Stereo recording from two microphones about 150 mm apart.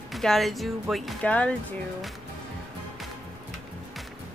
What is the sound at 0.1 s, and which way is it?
Speech, centre (ahead or behind).